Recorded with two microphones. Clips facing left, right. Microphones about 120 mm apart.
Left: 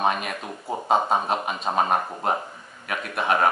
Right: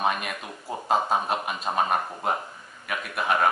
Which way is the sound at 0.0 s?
Centre (ahead or behind).